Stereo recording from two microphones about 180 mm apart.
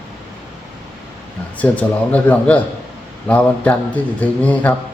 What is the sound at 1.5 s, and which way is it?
A man's voice, 10° left (ahead or behind).